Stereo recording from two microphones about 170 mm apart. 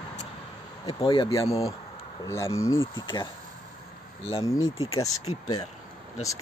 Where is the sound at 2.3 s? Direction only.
15° left (ahead or behind).